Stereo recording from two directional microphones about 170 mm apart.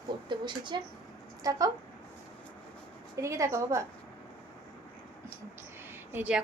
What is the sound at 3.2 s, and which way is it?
Speech, 15° right (ahead or behind).